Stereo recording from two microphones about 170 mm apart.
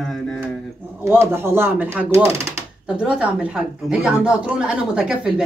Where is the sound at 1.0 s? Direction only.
15° right (ahead or behind).